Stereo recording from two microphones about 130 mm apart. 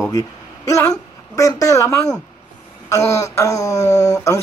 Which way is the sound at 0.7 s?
25° left (ahead or behind).